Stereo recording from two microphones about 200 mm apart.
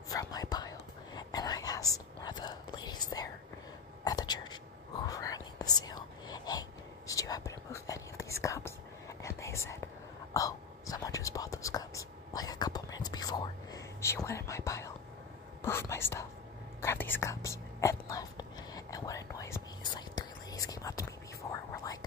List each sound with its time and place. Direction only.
0.1 s whispering: 20° left (ahead or behind)